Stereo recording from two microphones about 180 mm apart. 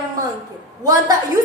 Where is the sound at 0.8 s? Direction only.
20° right (ahead or behind).